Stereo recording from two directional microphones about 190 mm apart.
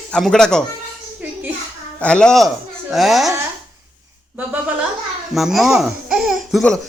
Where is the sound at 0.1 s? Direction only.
Centre (ahead or behind).